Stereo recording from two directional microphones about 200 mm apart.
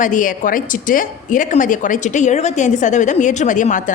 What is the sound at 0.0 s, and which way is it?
A woman's voice, 40° left (ahead or behind).